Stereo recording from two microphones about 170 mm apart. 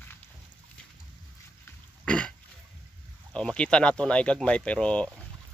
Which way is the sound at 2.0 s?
5° left (ahead or behind).